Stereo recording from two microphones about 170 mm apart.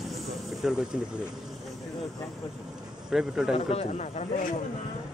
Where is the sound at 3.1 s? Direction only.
5° right (ahead or behind).